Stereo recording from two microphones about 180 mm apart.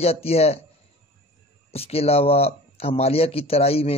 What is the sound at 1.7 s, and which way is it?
Speech, 35° left (ahead or behind).